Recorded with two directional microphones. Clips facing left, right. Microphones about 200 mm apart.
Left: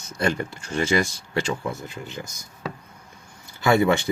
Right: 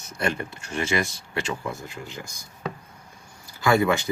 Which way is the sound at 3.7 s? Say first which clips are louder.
Left 2 dB; 25° left (ahead or behind).